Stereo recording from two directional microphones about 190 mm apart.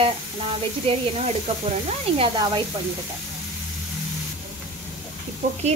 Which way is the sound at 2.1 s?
25° right (ahead or behind).